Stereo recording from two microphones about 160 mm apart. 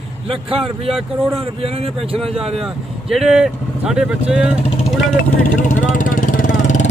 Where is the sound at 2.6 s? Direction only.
Centre (ahead or behind).